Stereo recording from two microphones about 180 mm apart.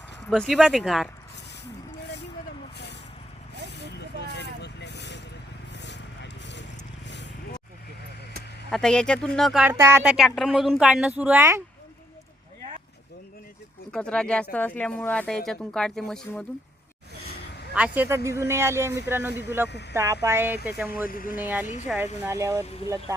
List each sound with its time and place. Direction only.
0.3 s speech: 5° left (ahead or behind)
3.9 s vehicle: 70° left (ahead or behind)
5.7 s a sound: 75° left (ahead or behind)
8.7 s speech: 5° left (ahead or behind)
9.6 s speech: 15° right (ahead or behind)
10.2 s speech: centre (ahead or behind)
13.9 s speech: 5° left (ahead or behind)
17.7 s speech: 10° right (ahead or behind)
21.1 s speech: 50° left (ahead or behind)
21.3 s speech: 10° right (ahead or behind)